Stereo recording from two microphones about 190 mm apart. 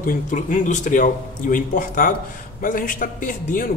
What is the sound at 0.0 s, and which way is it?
A man's voice, 40° left (ahead or behind).